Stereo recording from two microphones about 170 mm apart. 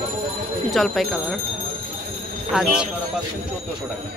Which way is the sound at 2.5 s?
5° right (ahead or behind).